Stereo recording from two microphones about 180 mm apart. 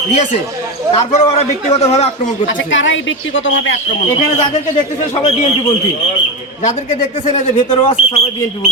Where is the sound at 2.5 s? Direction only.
90° left.